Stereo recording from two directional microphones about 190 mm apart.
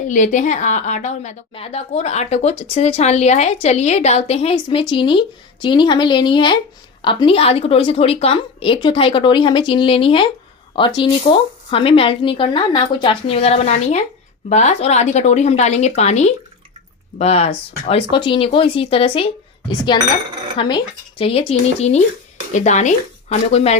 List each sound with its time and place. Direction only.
0.1 s a woman's voice: 40° left (ahead or behind)